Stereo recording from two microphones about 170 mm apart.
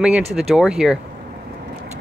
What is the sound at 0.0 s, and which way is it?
Speech, 5° right (ahead or behind).